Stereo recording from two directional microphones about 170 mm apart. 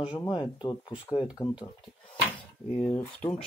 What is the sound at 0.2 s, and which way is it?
Speech, 30° left (ahead or behind).